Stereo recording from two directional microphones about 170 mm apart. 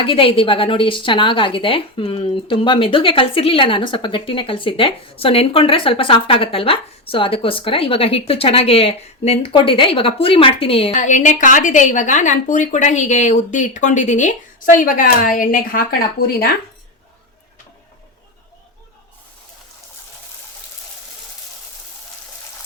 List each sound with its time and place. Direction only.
0.0 s a woman's voice: 30° left (ahead or behind); by 16.5 s 65° left (ahead or behind)